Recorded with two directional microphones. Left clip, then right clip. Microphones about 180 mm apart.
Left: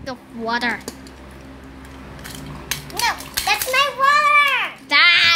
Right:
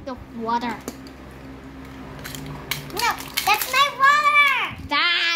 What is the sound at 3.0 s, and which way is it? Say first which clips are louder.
Children playing: left 1 dB; 30° left (ahead or behind).